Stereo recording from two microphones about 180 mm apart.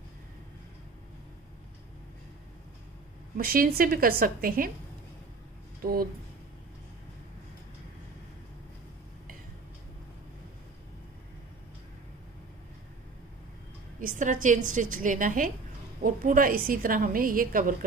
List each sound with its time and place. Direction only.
3.3 s a woman's voice: 55° right (ahead or behind)
5.8 s speech: 55° right (ahead or behind)
14.0 s a woman's voice: 45° right (ahead or behind)